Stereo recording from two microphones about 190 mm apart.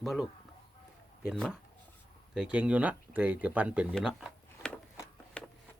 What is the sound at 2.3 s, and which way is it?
Speech, 5° right (ahead or behind).